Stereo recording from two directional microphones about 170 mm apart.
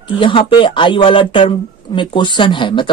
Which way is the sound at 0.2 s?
30° left (ahead or behind).